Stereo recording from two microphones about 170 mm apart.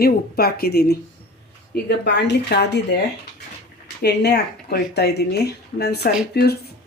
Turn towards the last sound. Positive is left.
turn(degrees=70)  # may be behind; listen again after turning